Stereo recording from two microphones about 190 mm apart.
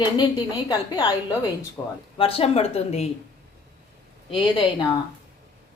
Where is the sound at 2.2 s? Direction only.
30° left (ahead or behind).